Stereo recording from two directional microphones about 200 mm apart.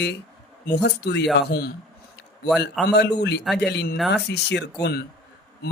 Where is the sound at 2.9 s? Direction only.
60° left (ahead or behind).